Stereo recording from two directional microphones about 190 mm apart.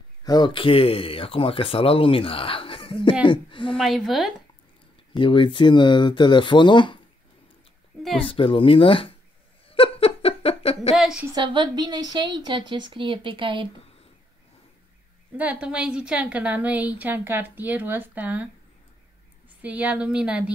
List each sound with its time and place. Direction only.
0.2 s speech: 20° left (ahead or behind)
3.7 s speech: centre (ahead or behind)
5.1 s speech: 25° left (ahead or behind)
8.2 s speech: 30° left (ahead or behind)
9.7 s laughter: 30° left (ahead or behind)
11.0 s a sound: 5° right (ahead or behind)
11.3 s a woman's voice: 25° right (ahead or behind)
15.3 s a woman's voice: 5° right (ahead or behind)
19.6 s a woman's voice: 10° right (ahead or behind)